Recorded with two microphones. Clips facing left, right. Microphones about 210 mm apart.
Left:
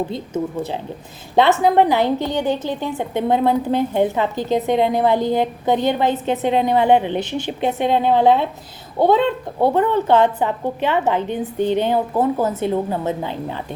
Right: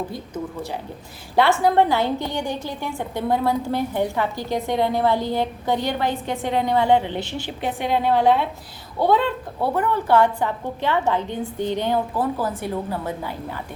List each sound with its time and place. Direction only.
1.4 s a woman's voice: 20° left (ahead or behind)